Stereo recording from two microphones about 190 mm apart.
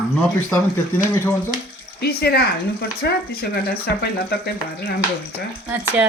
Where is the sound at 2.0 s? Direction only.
55° left (ahead or behind).